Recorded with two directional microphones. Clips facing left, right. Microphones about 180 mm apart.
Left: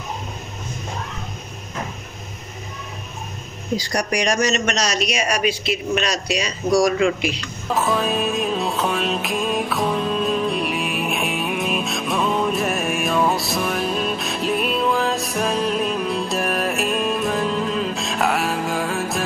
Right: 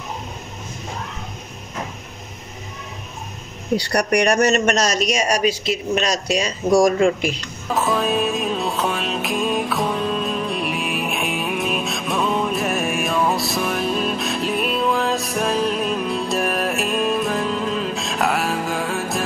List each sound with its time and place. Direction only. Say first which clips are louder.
3.7 s a man's voice: right 4 dB; 65° right (ahead or behind); by 6.9 s 45° right (ahead or behind)
7.7 s music: right 1 dB; centre (ahead or behind)